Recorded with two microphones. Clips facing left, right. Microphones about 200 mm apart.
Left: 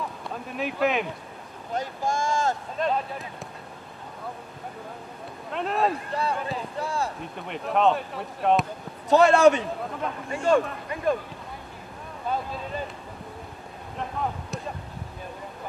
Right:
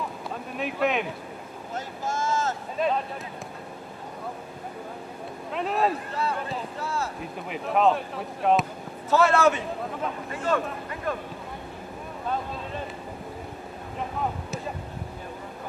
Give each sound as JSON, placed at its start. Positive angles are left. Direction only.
{"t": 0.5, "sound": "speech", "side_deg": 0}
{"t": 1.8, "sound": "speech", "side_deg": 15}
{"t": 2.8, "sound": "speech", "side_deg": -5}
{"t": 5.5, "sound": "speech", "side_deg": 0}
{"t": 6.8, "sound": "speech", "side_deg": 15}
{"t": 7.2, "sound": "speech", "side_deg": -5}
{"t": 9.1, "sound": "speech", "side_deg": 15}
{"t": 13.9, "sound": "speech", "side_deg": -5}